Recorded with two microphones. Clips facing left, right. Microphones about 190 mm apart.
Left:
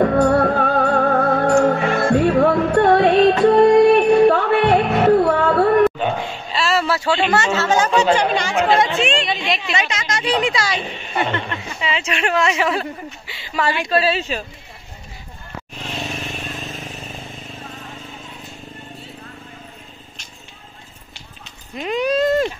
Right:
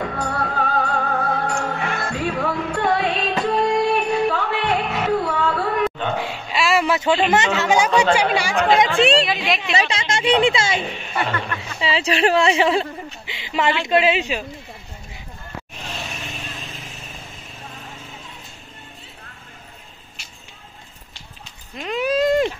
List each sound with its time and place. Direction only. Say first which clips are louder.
0.0 s music: left 11 dB; 55° left (ahead or behind)
6.1 s a sound: even; 10° right (ahead or behind)
7.2 s a woman's voice: even; 20° right (ahead or behind); by 9.8 s centre (ahead or behind)
9.8 s speech: right 1 dB; 30° right (ahead or behind)
11.1 s speech: left 2 dB; 20° left (ahead or behind)
11.8 s a woman's voice: right 4 dB; 35° right (ahead or behind)
13.3 s a sound: right 1 dB; 20° right (ahead or behind)
13.8 s speech: right 1 dB; 20° right (ahead or behind)
21.8 s clip-clop: left 1 dB; 5° right (ahead or behind)